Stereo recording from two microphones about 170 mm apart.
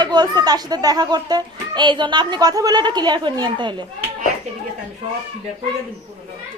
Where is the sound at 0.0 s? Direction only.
25° right (ahead or behind).